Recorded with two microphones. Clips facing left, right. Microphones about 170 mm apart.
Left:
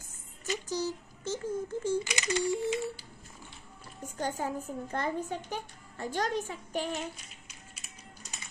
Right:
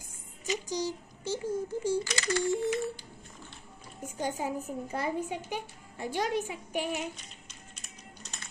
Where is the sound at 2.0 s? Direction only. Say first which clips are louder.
Right 1 dB; 20° left (ahead or behind).